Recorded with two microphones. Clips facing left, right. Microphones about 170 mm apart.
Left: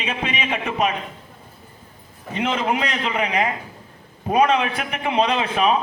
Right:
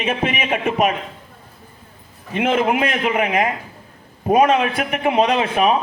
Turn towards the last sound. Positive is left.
turn(degrees=-45)  # may be behind; listen again after turning